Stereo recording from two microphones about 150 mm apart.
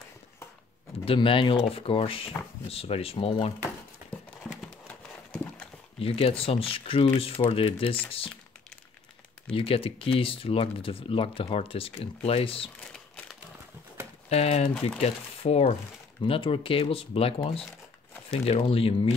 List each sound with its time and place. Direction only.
1.0 s speech: 35° left (ahead or behind)
4.5 s clip-clop: 5° left (ahead or behind)
5.9 s speech: 40° left (ahead or behind)
9.6 s speech: 40° left (ahead or behind)
12.9 s a sound: 5° left (ahead or behind)
14.3 s speech: 45° left (ahead or behind)